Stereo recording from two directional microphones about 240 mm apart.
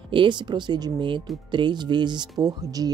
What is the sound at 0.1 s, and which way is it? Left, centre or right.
Speech, centre.